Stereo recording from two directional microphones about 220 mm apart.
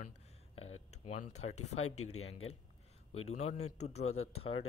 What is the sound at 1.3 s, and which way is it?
Speech, 30° left (ahead or behind).